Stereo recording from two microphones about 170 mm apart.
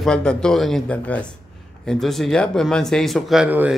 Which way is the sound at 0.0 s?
5° left (ahead or behind).